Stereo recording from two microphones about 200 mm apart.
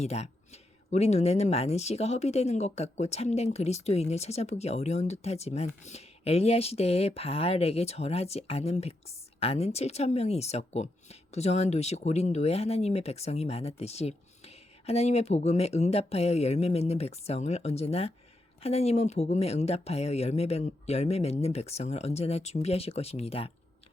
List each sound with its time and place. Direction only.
0.0 s speech: 30° left (ahead or behind)